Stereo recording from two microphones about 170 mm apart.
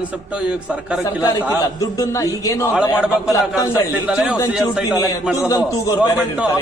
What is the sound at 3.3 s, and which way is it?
Speech, 20° left (ahead or behind).